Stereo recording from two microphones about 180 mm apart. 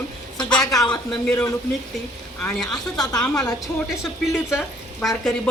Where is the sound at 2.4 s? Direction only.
Centre (ahead or behind).